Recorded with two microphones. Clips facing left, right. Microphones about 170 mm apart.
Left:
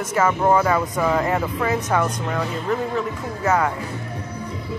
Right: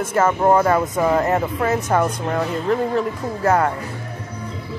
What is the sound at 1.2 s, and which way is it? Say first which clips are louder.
Speech: right 2 dB; 40° right (ahead or behind).